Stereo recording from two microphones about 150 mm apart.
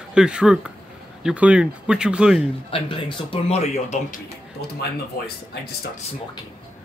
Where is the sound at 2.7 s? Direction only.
35° left (ahead or behind); by 4.2 s 55° left (ahead or behind).